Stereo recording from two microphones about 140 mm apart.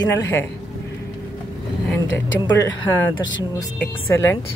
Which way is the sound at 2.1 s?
15° left (ahead or behind).